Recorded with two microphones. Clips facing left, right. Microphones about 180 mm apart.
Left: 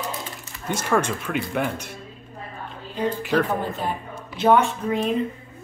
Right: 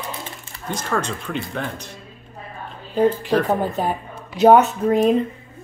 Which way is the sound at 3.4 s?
45° right (ahead or behind).